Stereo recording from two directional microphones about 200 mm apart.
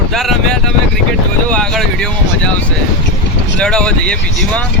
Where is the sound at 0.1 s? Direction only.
Centre (ahead or behind).